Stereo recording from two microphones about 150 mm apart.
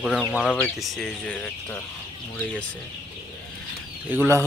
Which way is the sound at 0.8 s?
5° left (ahead or behind).